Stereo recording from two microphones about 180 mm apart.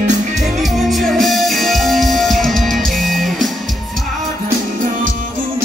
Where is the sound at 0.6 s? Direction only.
Centre (ahead or behind).